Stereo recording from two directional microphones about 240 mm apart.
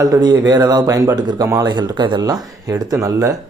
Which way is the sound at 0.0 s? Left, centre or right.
Centre.